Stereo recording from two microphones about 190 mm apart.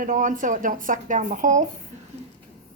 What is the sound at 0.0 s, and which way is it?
A woman's voice, 45° right (ahead or behind).